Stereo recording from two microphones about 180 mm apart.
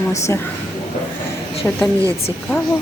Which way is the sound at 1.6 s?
10° left (ahead or behind).